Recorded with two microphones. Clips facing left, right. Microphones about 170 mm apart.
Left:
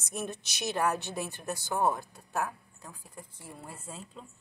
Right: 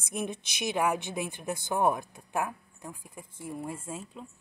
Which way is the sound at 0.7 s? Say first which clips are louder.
Right 1 dB; 15° right (ahead or behind).